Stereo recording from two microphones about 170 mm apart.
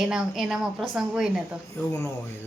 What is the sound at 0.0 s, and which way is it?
Speech, centre (ahead or behind).